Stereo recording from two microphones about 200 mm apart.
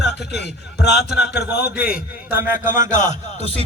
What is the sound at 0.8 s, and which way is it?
A man's voice, 55° left (ahead or behind).